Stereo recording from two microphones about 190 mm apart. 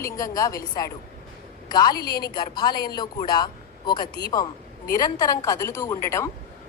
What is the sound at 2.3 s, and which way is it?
A woman's voice, 20° left (ahead or behind).